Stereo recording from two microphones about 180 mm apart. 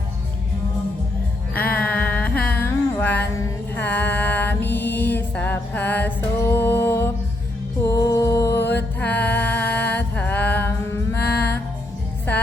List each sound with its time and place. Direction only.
1.7 s music: 10° left (ahead or behind)
2.5 s a sound: 10° left (ahead or behind)
3.8 s mantra: 10° left (ahead or behind)
7.9 s music: 20° left (ahead or behind)
11.2 s music: 65° left (ahead or behind)